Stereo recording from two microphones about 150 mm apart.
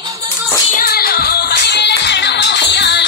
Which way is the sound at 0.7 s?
80° left.